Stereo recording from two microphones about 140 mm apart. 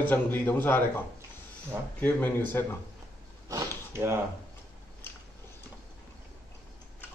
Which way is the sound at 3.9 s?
20° right (ahead or behind).